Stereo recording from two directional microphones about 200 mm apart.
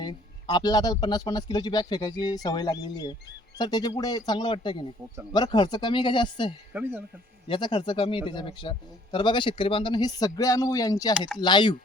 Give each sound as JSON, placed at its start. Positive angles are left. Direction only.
{"t": 0.0, "sound": "a man's voice", "side_deg": 20}
{"t": 6.7, "sound": "speech", "side_deg": -10}
{"t": 7.4, "sound": "a man's voice", "side_deg": 25}